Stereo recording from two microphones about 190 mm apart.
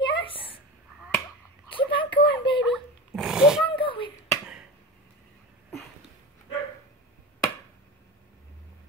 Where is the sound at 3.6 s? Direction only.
25° left (ahead or behind).